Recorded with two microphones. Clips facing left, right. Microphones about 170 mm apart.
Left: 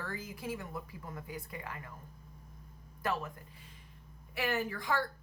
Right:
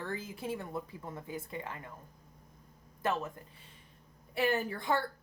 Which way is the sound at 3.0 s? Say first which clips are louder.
Right 2 dB; 25° right (ahead or behind).